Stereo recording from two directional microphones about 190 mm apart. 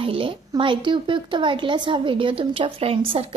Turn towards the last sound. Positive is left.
turn(degrees=-30)  # may be behind; listen again after turning